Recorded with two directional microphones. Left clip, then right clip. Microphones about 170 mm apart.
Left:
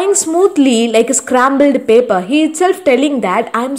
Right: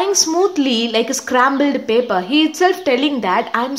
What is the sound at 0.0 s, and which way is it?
A woman's voice, 25° left (ahead or behind).